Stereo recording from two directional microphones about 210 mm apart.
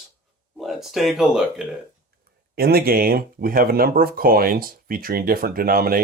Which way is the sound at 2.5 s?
45° right (ahead or behind).